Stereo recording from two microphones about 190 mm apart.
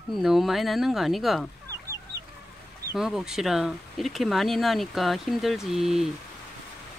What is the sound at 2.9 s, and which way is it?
Speech, centre (ahead or behind).